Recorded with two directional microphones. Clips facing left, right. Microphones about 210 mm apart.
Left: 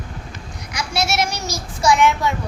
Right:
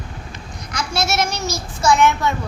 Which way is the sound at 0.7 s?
15° left (ahead or behind).